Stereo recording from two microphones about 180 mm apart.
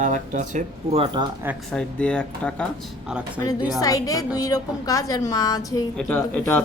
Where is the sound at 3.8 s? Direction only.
20° left (ahead or behind).